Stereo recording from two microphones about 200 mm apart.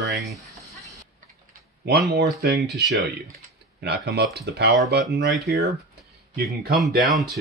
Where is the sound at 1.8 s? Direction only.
50° right (ahead or behind).